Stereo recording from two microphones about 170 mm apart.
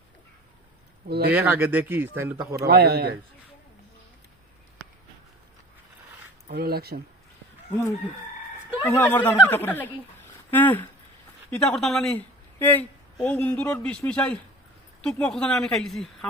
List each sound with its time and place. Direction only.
1.0 s a man's voice: 70° right (ahead or behind)
1.3 s speech: 10° right (ahead or behind)
2.6 s a man's voice: 70° right (ahead or behind)
6.5 s speech: 65° right (ahead or behind)
8.8 s a woman's voice: 15° left (ahead or behind)